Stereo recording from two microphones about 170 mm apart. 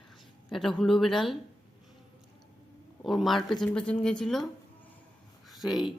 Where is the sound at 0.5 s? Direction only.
Centre (ahead or behind).